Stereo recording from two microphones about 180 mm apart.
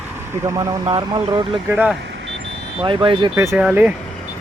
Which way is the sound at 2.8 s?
25° right (ahead or behind).